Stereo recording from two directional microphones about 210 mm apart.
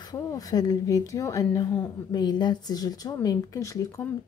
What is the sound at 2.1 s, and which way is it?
Speech, 20° left (ahead or behind).